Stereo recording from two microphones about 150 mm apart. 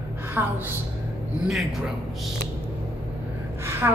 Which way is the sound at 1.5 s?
Centre (ahead or behind).